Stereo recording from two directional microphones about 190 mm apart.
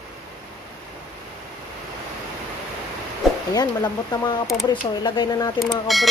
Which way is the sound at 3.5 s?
20° left (ahead or behind).